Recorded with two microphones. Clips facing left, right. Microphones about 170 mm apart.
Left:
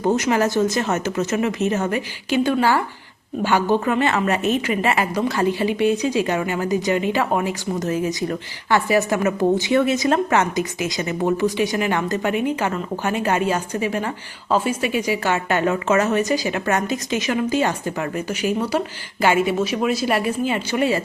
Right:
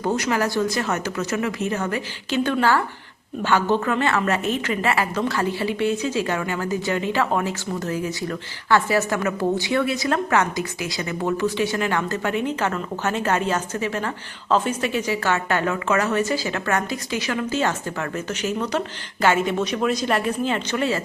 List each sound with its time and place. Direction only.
0.0 s a woman's voice: 20° left (ahead or behind)